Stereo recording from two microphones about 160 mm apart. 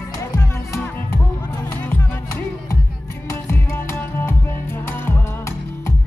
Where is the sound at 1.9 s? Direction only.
20° left (ahead or behind).